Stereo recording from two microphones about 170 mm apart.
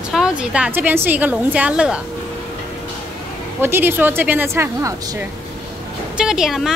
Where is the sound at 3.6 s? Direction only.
15° right (ahead or behind).